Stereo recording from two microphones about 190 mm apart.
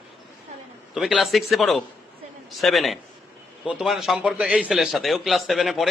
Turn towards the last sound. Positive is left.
turn(degrees=0)  # may be behind; listen again after turning